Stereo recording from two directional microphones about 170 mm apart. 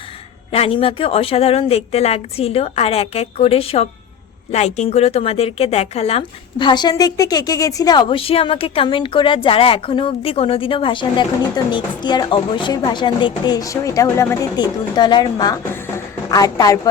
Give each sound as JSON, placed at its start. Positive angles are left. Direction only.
{"t": 0.5, "sound": "speech", "side_deg": 35}